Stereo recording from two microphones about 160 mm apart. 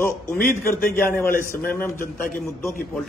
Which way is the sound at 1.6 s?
10° left (ahead or behind).